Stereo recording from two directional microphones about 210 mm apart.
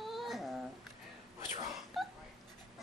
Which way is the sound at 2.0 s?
Centre (ahead or behind).